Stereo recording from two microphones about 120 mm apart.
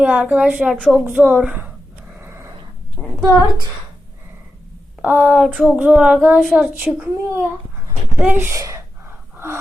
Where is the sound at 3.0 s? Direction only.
20° left (ahead or behind).